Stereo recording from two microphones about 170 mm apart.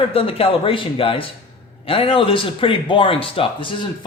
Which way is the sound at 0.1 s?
35° left (ahead or behind).